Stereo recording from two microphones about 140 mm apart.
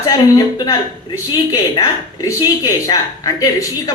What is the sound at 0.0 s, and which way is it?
A man's voice, 25° left (ahead or behind).